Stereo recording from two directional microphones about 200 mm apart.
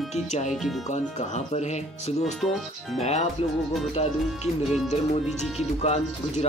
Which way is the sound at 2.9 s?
30° left (ahead or behind).